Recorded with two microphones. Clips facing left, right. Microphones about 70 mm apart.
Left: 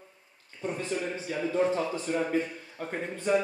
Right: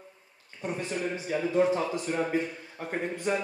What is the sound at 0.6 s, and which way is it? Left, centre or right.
A man's voice, right.